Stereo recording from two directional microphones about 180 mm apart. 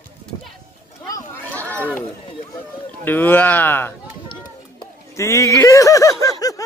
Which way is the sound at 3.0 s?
10° left (ahead or behind).